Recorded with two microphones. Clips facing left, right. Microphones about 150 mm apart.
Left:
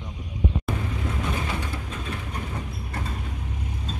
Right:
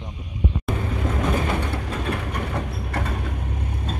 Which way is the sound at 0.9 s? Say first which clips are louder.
Right 5 dB; 60° right (ahead or behind).